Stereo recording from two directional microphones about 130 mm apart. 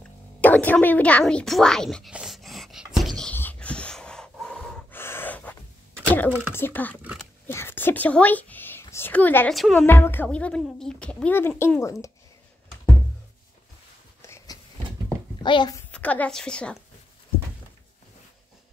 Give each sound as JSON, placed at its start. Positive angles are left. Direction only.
{"t": 0.4, "sound": "speech", "side_deg": 10}
{"t": 2.1, "sound": "a sound", "side_deg": 0}
{"t": 4.9, "sound": "gasp", "side_deg": 15}
{"t": 6.0, "sound": "a sound", "side_deg": 10}
{"t": 6.5, "sound": "speech", "side_deg": 15}
{"t": 7.0, "sound": "dog", "side_deg": -10}
{"t": 7.4, "sound": "speech", "side_deg": 15}
{"t": 9.5, "sound": "a woman's voice", "side_deg": 0}
{"t": 9.8, "sound": "speech", "side_deg": 15}
{"t": 14.2, "sound": "a sound", "side_deg": 25}
{"t": 15.4, "sound": "a child's voice", "side_deg": 35}
{"t": 15.9, "sound": "speech", "side_deg": 10}